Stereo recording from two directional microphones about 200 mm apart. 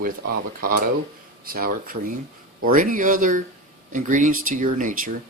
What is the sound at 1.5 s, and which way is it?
Speech, 45° right (ahead or behind).